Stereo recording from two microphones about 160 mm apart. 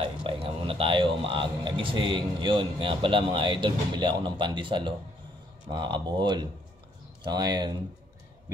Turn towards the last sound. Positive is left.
turn(degrees=-25)  # may be behind; listen again after turning